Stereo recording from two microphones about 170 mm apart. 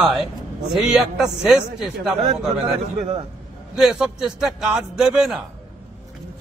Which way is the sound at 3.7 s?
5° right (ahead or behind).